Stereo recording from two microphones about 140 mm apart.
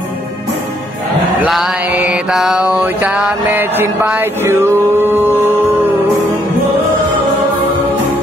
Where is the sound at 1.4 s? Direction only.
5° right (ahead or behind).